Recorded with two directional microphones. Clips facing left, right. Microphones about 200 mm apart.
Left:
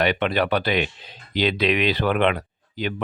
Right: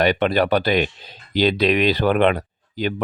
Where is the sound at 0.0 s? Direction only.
40° right (ahead or behind).